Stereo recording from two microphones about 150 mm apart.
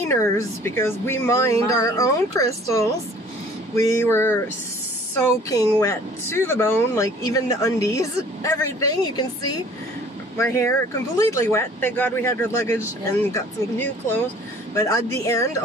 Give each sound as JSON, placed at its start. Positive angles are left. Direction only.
{"t": 0.1, "sound": "speech", "side_deg": 20}